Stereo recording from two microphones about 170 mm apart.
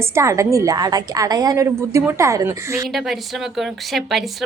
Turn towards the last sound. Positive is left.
turn(degrees=0)  # may be behind; listen again after turning